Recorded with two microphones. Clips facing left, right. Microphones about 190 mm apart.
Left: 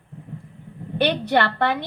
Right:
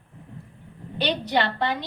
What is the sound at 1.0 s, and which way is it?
Speech, 60° left (ahead or behind).